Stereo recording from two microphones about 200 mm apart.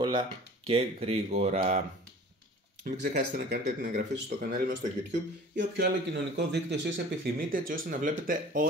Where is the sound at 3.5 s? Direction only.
50° right (ahead or behind).